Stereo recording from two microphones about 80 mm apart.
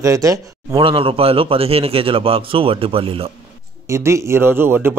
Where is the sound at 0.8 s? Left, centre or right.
Right.